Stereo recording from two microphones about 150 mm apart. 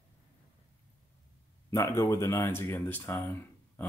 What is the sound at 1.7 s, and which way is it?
Speech, 20° left (ahead or behind).